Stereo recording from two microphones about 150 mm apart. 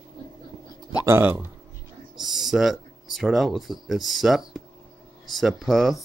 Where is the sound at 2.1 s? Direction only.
Centre (ahead or behind).